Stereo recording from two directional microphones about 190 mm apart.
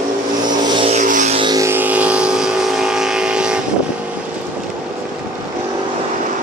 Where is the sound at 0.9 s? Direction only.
40° right (ahead or behind).